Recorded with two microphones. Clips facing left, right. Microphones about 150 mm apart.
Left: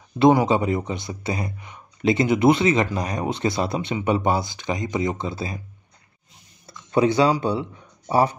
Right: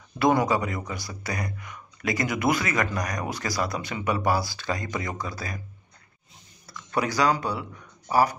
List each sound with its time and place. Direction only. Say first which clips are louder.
0.5 s speech: left 5 dB; 30° left (ahead or behind)
6.7 s a sound: left 8 dB; 25° left (ahead or behind)
7.4 s speech: left 6 dB; 25° left (ahead or behind)